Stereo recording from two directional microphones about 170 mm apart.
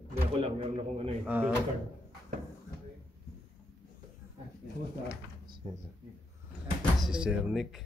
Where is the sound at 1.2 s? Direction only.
10° right (ahead or behind).